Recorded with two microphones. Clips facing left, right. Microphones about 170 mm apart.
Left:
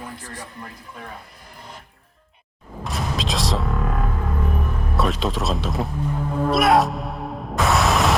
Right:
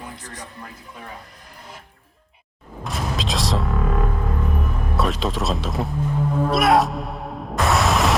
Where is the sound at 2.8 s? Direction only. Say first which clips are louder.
Even; centre (ahead or behind).